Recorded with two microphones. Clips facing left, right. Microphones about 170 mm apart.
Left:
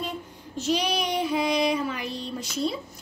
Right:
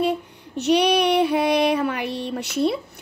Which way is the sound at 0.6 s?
70° right (ahead or behind).